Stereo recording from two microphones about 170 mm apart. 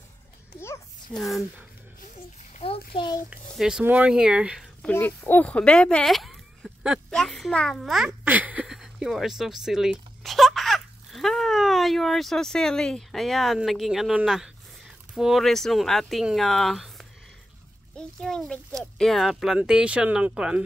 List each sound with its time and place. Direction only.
1.1 s speech: centre (ahead or behind)
2.6 s a sound: 35° left (ahead or behind)
3.3 s speech: 5° right (ahead or behind)
4.8 s speech: 10° left (ahead or behind)
8.2 s a sound: 10° right (ahead or behind)
15.1 s speech: centre (ahead or behind)
17.9 s speech: 5° left (ahead or behind)